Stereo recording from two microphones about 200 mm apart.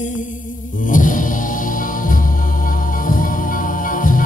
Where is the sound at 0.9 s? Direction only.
40° left (ahead or behind).